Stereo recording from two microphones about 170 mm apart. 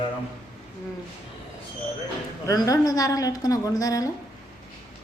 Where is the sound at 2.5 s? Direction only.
20° left (ahead or behind).